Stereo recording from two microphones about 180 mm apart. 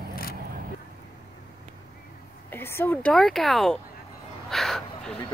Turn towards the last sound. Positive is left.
turn(degrees=0)  # may be behind; listen again after turning